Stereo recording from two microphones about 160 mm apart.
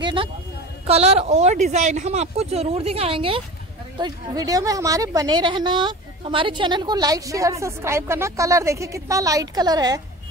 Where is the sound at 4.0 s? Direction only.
25° right (ahead or behind).